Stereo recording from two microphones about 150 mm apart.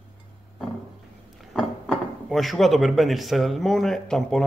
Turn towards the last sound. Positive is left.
turn(degrees=5)  # may be behind; listen again after turning